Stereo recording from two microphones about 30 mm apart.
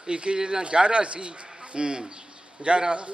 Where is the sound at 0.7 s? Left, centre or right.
Right.